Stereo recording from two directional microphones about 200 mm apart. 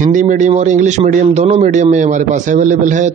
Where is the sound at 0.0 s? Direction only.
40° right (ahead or behind).